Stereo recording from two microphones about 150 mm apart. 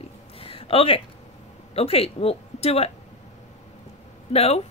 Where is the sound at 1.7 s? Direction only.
40° left (ahead or behind).